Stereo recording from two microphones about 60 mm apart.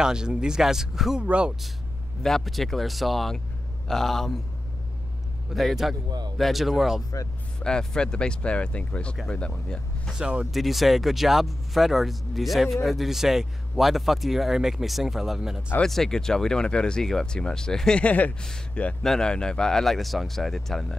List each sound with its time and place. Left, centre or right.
0.0 s speech: centre
1.2 s speech: centre
2.2 s speech: centre
5.5 s speech: centre
7.6 s speech: centre
10.1 s speech: centre
10.5 s speech: centre
15.8 s speech: centre
18.0 s speech: left
19.0 s speech: centre